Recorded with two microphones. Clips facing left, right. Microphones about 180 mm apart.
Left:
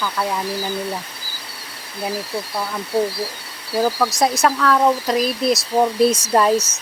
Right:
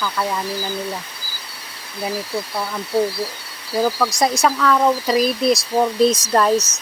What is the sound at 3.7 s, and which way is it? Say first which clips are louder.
Speech: even; 5° left (ahead or behind).